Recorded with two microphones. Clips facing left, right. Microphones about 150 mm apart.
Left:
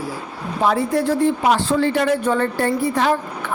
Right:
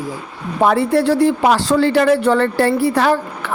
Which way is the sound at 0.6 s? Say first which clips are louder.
Right 4 dB; 65° right (ahead or behind).